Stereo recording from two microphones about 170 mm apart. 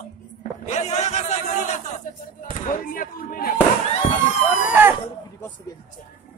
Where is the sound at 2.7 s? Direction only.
55° left (ahead or behind).